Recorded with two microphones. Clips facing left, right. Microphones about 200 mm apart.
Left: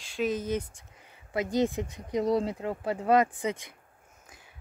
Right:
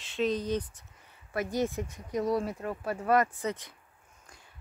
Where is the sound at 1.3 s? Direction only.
15° left (ahead or behind).